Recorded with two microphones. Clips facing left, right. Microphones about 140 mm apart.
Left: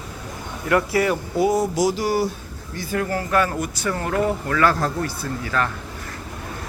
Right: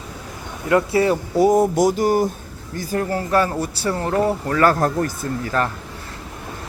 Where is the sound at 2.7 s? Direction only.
40° right (ahead or behind).